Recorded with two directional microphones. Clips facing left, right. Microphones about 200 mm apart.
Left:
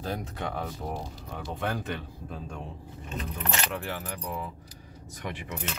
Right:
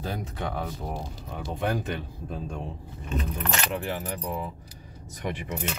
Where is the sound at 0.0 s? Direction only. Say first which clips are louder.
Right 1 dB; 5° right (ahead or behind).